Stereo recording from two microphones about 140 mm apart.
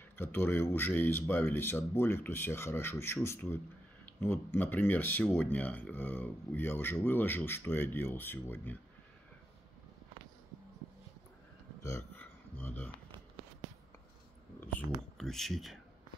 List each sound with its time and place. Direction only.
0.1 s speech: 15° left (ahead or behind)
11.8 s a sound: 15° left (ahead or behind)
15.1 s speech: centre (ahead or behind)